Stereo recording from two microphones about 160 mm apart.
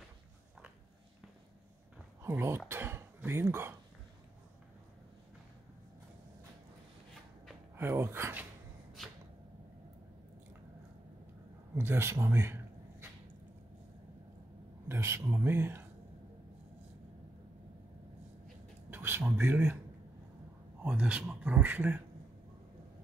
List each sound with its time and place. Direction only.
2.2 s speech: 15° right (ahead or behind)
7.7 s speech: 15° right (ahead or behind)
11.7 s speech: 15° right (ahead or behind)
14.9 s speech: 15° right (ahead or behind)
18.9 s speech: 15° right (ahead or behind)
20.8 s speech: 10° right (ahead or behind)